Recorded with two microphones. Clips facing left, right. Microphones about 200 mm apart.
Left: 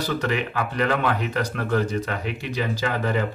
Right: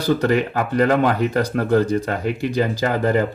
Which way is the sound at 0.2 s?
40° right (ahead or behind).